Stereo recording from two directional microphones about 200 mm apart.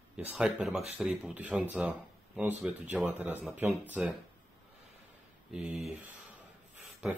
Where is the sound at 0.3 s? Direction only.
5° right (ahead or behind).